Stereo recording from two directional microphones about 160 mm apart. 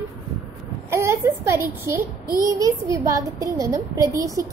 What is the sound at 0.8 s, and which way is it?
A woman's voice, 15° right (ahead or behind).